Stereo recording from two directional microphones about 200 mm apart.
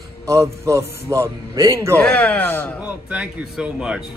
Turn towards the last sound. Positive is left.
turn(degrees=-5)  # may be behind; listen again after turning